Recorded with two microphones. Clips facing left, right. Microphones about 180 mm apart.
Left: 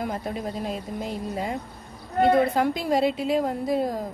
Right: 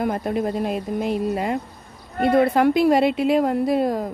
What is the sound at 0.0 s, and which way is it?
A woman's voice, 60° right (ahead or behind).